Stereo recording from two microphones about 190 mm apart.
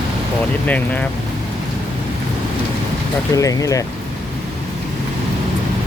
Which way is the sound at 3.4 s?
15° left (ahead or behind).